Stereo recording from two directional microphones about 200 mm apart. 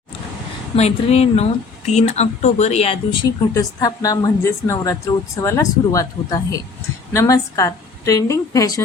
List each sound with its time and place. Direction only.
0.8 s speech: 30° left (ahead or behind)
3.5 s a woman's voice: 15° left (ahead or behind)